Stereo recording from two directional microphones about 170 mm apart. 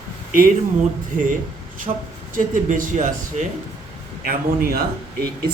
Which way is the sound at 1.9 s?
25° right (ahead or behind).